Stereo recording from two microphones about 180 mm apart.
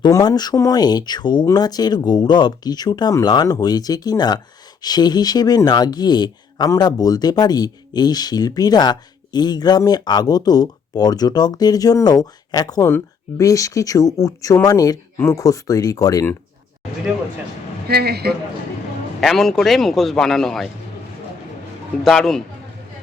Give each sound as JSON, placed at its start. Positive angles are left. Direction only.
{"t": 0.0, "sound": "speech", "side_deg": 20}
{"t": 17.8, "sound": "a man's voice", "side_deg": -60}
{"t": 19.2, "sound": "speech", "side_deg": 0}
{"t": 22.0, "sound": "speech", "side_deg": 0}